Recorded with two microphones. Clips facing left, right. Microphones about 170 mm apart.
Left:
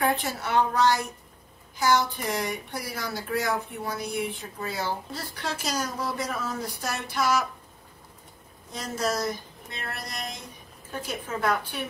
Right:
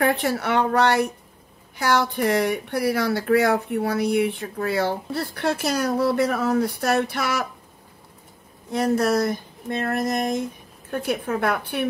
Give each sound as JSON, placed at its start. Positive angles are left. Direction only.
{"t": 0.0, "sound": "speech", "side_deg": -65}
{"t": 8.7, "sound": "speech", "side_deg": -60}
{"t": 10.9, "sound": "speech", "side_deg": -60}